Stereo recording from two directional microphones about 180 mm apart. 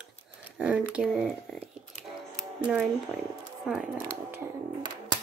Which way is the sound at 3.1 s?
Centre (ahead or behind).